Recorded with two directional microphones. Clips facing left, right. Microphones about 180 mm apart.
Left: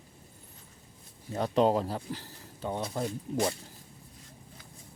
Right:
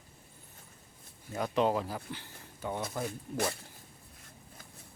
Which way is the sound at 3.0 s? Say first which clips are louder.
Left 5 dB; 25° left (ahead or behind).